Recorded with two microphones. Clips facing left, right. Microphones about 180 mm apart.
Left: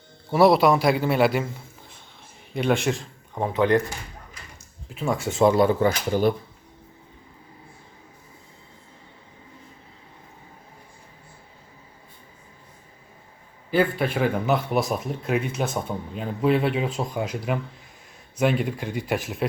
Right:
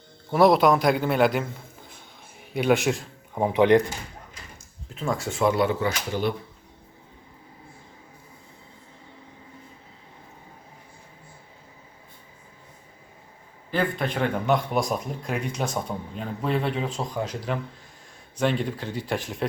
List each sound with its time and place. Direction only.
0.3 s speech: 5° left (ahead or behind)
2.5 s speech: 5° right (ahead or behind)
4.9 s speech: 15° left (ahead or behind)
5.5 s speech: 40° left (ahead or behind)
13.7 s speech: 5° left (ahead or behind)